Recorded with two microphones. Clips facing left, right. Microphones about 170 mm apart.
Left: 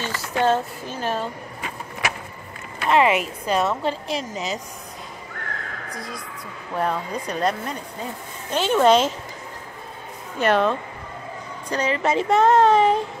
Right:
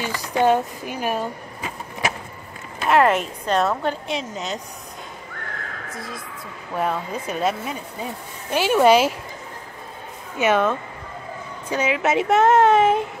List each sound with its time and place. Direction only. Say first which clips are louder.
0.0 s speech: right 2 dB; 15° right (ahead or behind)
2.8 s a woman's voice: right 1 dB; centre (ahead or behind)
5.9 s a woman's voice: even; centre (ahead or behind)
10.4 s a woman's voice: even; 5° right (ahead or behind)